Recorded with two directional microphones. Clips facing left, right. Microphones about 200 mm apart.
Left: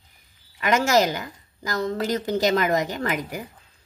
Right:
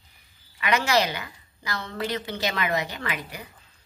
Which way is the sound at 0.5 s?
45° left (ahead or behind).